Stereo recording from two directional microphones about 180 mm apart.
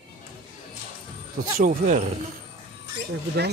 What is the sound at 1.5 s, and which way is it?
Speech, 45° right (ahead or behind).